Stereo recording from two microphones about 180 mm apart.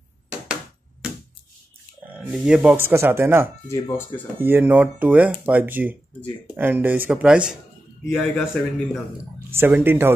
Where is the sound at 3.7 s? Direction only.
15° left (ahead or behind).